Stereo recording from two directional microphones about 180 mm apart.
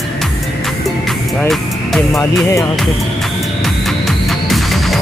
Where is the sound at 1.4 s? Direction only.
Centre (ahead or behind).